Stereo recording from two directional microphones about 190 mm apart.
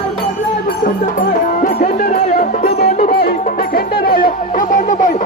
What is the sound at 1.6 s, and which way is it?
Music, 45° left (ahead or behind).